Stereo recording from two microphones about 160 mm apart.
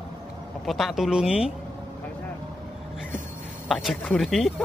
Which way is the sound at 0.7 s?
Centre (ahead or behind).